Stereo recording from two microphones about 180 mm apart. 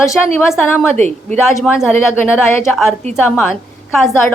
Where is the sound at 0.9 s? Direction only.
40° right (ahead or behind).